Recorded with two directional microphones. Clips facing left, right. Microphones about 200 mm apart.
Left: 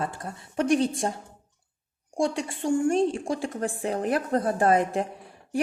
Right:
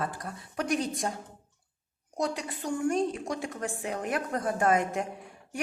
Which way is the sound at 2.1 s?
25° left (ahead or behind).